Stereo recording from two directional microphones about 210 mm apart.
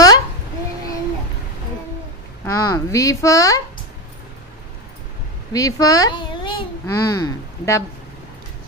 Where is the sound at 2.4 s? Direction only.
15° left (ahead or behind).